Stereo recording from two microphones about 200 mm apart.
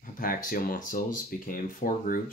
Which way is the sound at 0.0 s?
45° left (ahead or behind).